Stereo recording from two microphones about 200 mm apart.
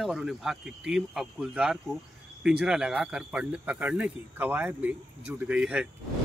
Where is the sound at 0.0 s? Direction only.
Centre (ahead or behind).